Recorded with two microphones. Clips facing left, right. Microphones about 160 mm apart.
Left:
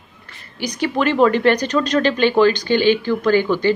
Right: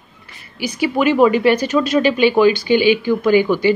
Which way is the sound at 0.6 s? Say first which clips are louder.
Right 2 dB; 5° right (ahead or behind).